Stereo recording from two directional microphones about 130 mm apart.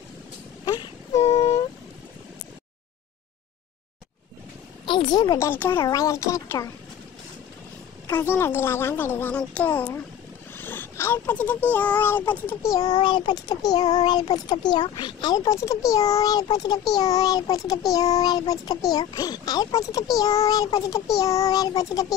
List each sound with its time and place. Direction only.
0.7 s a sound: 25° left (ahead or behind)
1.2 s vehicle: 55° left (ahead or behind)
4.8 s a child's voice: 35° left (ahead or behind)
5.5 s speech: 15° left (ahead or behind)
8.1 s speech: 20° left (ahead or behind)
10.5 s a sound: 15° left (ahead or behind)
11.7 s speech: 10° left (ahead or behind)
12.7 s speech: 35° left (ahead or behind)